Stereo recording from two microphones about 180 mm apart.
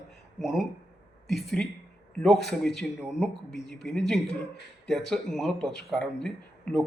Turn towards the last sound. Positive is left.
turn(degrees=5)  # may be behind; listen again after turning